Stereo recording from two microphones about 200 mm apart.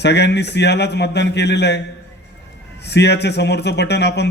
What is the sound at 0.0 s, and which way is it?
Speech, 60° left (ahead or behind).